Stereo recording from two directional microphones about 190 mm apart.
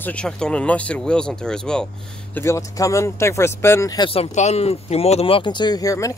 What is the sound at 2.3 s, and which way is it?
Speech, 15° left (ahead or behind).